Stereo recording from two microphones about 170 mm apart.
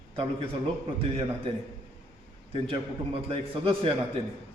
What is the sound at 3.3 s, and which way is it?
Speech, 30° right (ahead or behind).